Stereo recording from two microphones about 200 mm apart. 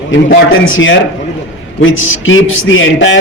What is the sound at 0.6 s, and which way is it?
A man's voice, 75° left (ahead or behind).